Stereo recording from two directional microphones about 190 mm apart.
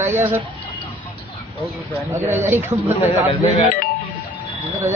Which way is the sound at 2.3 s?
15° right (ahead or behind).